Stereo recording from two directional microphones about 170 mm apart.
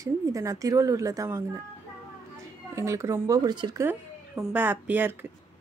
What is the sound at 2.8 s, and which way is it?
Speech, 15° right (ahead or behind).